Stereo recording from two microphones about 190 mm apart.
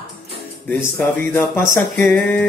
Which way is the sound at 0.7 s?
10° left (ahead or behind).